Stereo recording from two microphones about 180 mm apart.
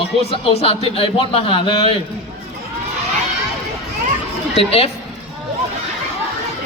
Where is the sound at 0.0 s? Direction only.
30° left (ahead or behind).